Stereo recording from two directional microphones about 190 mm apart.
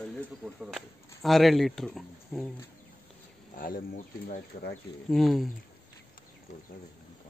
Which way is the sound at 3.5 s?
45° left (ahead or behind).